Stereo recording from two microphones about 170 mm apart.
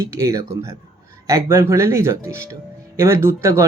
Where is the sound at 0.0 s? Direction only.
20° right (ahead or behind).